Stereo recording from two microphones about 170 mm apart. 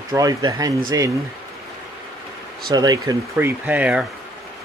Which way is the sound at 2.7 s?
20° right (ahead or behind).